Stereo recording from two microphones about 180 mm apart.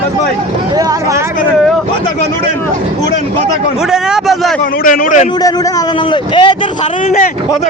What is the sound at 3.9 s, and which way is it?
Speech, centre (ahead or behind).